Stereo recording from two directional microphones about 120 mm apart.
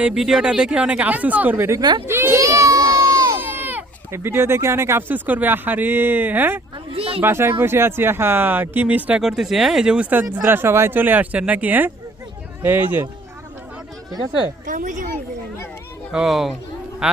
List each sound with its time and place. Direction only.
0.0 s speech: 5° right (ahead or behind); by 1.8 s 20° right (ahead or behind)
1.8 s speech: 35° right (ahead or behind)
2.0 s speech: 20° right (ahead or behind)
6.9 s a sound: 55° right (ahead or behind)
7.2 s speech: 20° right (ahead or behind)
14.7 s speech: 90° right
16.1 s a man's voice: 5° right (ahead or behind)